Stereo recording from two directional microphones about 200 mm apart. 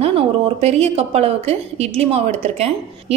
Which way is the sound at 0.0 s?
30° right (ahead or behind).